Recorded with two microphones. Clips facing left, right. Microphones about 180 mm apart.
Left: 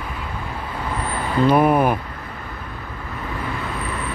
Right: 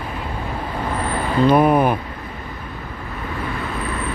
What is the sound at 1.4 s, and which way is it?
Speech, 5° left (ahead or behind).